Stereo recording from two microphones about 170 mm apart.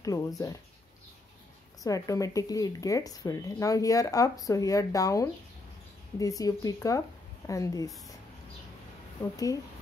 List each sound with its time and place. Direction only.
0.0 s speech: 20° left (ahead or behind)
1.8 s speech: 20° left (ahead or behind)
9.2 s speech: 20° left (ahead or behind)